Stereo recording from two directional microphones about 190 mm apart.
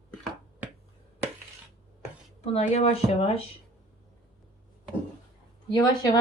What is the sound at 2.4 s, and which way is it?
Speech, 35° left (ahead or behind).